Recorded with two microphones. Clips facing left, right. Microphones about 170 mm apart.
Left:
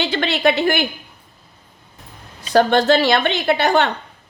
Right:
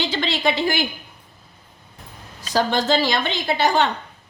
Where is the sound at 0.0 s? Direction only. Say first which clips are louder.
Left 4 dB; 60° left (ahead or behind).